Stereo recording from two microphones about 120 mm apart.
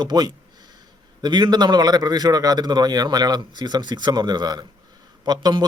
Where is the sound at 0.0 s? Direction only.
35° right (ahead or behind).